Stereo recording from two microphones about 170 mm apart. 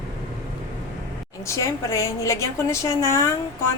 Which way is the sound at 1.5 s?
15° left (ahead or behind).